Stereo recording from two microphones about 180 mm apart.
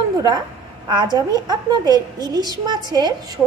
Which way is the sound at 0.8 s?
25° right (ahead or behind).